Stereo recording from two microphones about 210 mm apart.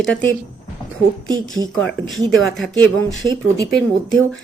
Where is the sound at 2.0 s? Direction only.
20° right (ahead or behind).